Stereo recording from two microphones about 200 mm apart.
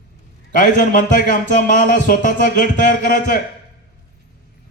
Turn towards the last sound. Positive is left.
turn(degrees=45)  # may be behind; listen again after turning